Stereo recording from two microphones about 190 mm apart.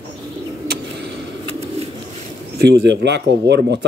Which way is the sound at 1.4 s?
30° right (ahead or behind).